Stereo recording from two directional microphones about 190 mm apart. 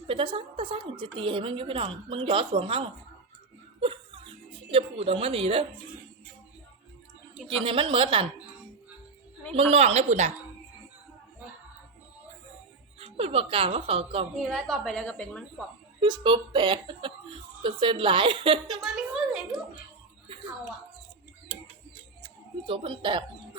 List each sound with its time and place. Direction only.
0.1 s a woman's voice: 30° right (ahead or behind)
3.8 s music: 30° right (ahead or behind)
7.5 s a woman's voice: 30° right (ahead or behind)
9.6 s a woman's voice: 30° right (ahead or behind)
13.0 s a woman's voice: 30° right (ahead or behind)
14.3 s a woman's voice: centre (ahead or behind)
16.0 s a woman's voice: 25° right (ahead or behind)
18.8 s a sound: centre (ahead or behind)
22.6 s a woman's voice: 25° right (ahead or behind)